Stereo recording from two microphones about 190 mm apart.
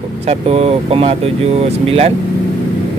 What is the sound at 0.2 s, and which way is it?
Speech, 35° right (ahead or behind).